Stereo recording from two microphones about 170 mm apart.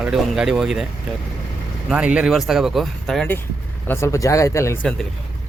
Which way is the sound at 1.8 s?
5° right (ahead or behind).